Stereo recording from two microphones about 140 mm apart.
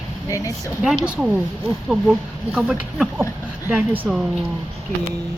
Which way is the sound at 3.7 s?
15° right (ahead or behind).